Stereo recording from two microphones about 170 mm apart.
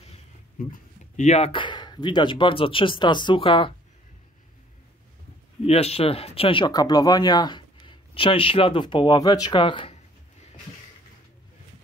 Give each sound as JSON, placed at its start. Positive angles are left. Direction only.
{"t": 0.6, "sound": "speech", "side_deg": 50}
{"t": 5.6, "sound": "speech", "side_deg": 35}